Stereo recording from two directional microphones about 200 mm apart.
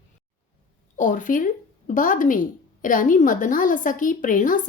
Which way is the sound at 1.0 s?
40° left (ahead or behind).